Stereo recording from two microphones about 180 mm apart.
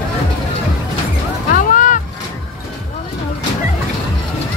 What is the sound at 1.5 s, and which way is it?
Boat, 50° left (ahead or behind).